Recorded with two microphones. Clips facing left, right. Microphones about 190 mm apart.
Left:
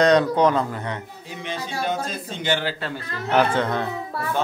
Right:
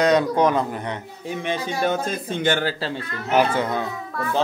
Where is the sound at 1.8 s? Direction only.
55° right (ahead or behind).